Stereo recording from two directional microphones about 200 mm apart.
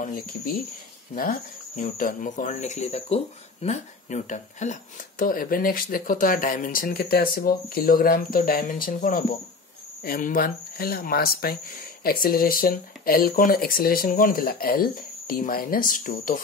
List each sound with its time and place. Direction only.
1.1 s speech: 45° left (ahead or behind)